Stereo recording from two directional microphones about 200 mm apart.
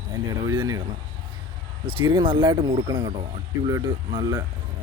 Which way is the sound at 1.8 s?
25° right (ahead or behind).